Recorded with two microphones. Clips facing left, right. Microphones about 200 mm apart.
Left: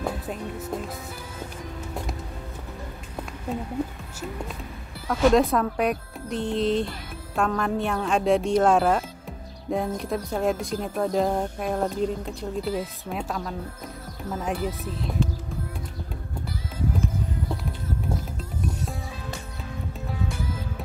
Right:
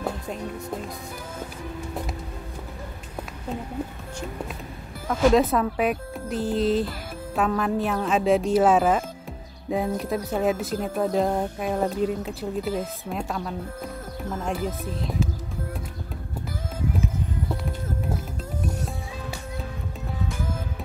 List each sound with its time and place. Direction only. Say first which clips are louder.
0.0 s speech: even; centre (ahead or behind)
5.0 s speech: even; centre (ahead or behind)